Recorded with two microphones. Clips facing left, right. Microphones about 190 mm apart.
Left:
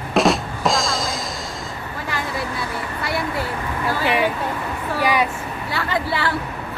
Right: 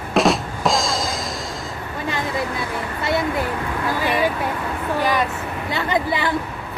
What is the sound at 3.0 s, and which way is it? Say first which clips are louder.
Speech: right 4 dB; 20° right (ahead or behind).